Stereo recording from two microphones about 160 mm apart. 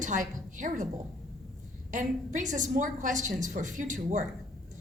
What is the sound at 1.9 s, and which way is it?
A woman's voice, 50° right (ahead or behind).